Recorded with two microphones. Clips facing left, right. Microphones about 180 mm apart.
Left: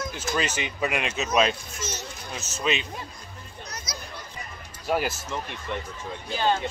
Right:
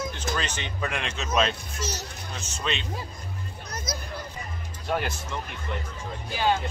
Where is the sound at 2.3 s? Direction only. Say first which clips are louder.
Left 4 dB; 5° left (ahead or behind).